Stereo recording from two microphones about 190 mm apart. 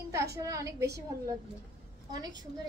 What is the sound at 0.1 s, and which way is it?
Speech, 15° right (ahead or behind).